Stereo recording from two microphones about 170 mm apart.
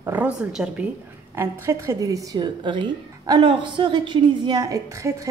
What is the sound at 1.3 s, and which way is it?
A woman's voice, 15° right (ahead or behind).